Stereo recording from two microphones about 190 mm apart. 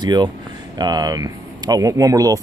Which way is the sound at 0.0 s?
20° right (ahead or behind).